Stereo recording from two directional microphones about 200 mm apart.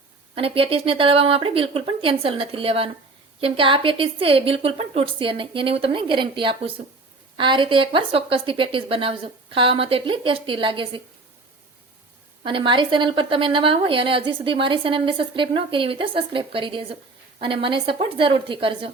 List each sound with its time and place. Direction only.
0.3 s a woman's voice: 25° right (ahead or behind)
12.4 s a woman's voice: 25° right (ahead or behind)